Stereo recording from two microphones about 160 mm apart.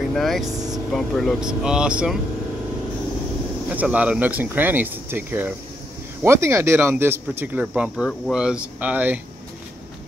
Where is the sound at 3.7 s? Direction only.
10° right (ahead or behind).